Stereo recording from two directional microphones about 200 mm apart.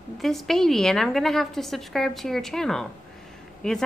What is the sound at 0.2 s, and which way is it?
A woman's voice, centre (ahead or behind).